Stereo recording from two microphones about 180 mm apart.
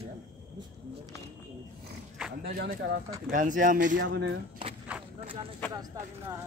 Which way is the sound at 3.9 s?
90° right.